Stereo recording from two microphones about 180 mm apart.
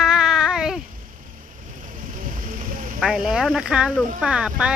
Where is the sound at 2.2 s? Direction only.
50° right (ahead or behind).